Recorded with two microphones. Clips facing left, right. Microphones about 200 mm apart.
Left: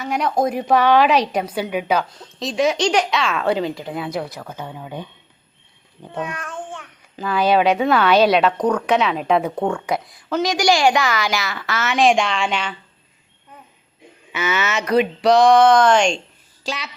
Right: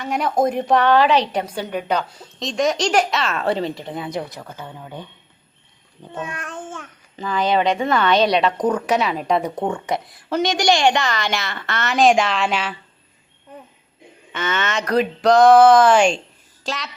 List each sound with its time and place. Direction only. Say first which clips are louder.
0.0 s a woman's voice: even; centre (ahead or behind)
2.0 s a woman's voice: left 1 dB; 10° right (ahead or behind)
2.4 s a woman's voice: left 1 dB; centre (ahead or behind)
6.5 s child singing: left 1 dB; 45° right (ahead or behind)
7.2 s a woman's voice: left 2 dB; 10° left (ahead or behind)
14.3 s a woman's voice: left 1 dB; 10° left (ahead or behind)